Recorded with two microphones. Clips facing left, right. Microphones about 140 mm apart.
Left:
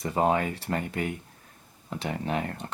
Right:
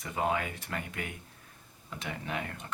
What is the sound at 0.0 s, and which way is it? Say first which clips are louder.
Speech: left 7 dB; 35° left (ahead or behind).